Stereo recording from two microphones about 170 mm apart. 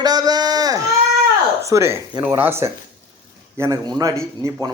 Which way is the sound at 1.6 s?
15° right (ahead or behind).